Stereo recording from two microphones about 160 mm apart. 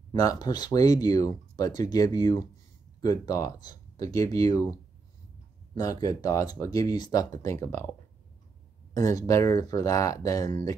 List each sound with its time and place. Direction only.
0.1 s speech: 25° left (ahead or behind)
5.8 s speech: 25° left (ahead or behind)
8.9 s speech: 20° left (ahead or behind)